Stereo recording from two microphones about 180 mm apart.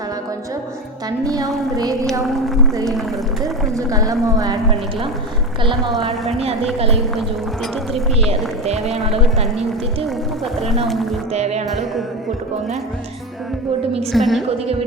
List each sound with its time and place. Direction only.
1.2 s speech: 20° right (ahead or behind)
2.2 s speech: centre (ahead or behind)
3.4 s speech: 20° right (ahead or behind)
6.0 s speech: 35° right (ahead or behind)
8.3 s speech: 35° right (ahead or behind)
10.8 s speech: centre (ahead or behind)
11.3 s speech: 35° right (ahead or behind)
14.1 s speech: centre (ahead or behind)